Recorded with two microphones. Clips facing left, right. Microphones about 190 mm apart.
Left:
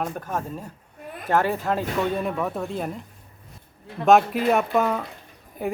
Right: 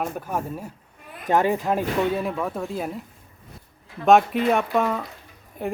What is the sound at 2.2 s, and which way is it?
Speech, centre (ahead or behind).